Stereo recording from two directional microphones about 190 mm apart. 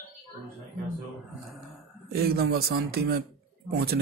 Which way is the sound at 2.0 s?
55° right (ahead or behind).